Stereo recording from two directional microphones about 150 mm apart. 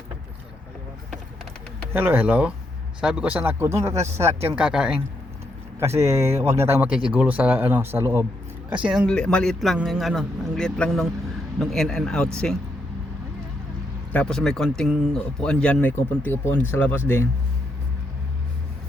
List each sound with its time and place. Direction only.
1.9 s speech: 15° right (ahead or behind)
5.8 s speech: 20° right (ahead or behind)
8.7 s speech: 5° right (ahead or behind)
9.0 s speech: 5° left (ahead or behind)
14.1 s speech: 5° left (ahead or behind)